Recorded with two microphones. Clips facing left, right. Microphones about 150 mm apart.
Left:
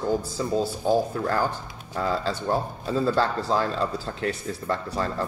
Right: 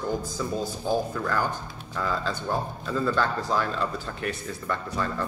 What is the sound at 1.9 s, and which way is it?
Speech, 30° left (ahead or behind).